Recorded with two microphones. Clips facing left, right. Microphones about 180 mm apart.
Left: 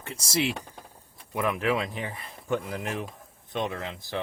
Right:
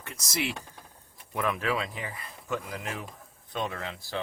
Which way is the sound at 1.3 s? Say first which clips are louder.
Left 3 dB; 15° left (ahead or behind).